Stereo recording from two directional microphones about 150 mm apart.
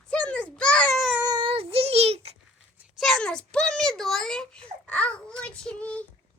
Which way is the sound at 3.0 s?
5° left (ahead or behind).